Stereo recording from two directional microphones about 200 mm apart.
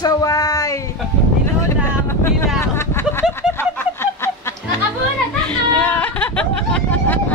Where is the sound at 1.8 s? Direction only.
10° left (ahead or behind).